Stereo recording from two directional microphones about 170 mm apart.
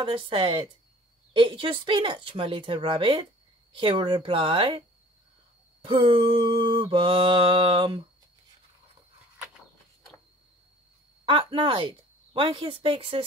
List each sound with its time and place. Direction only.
0.0 s mantra: 30° right (ahead or behind)
1.3 s speech: 30° right (ahead or behind)
5.9 s mantra: 30° right (ahead or behind)
11.2 s mantra: 30° right (ahead or behind)